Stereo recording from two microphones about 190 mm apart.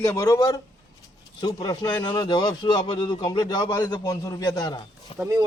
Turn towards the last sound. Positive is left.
turn(degrees=-15)  # may be behind; listen again after turning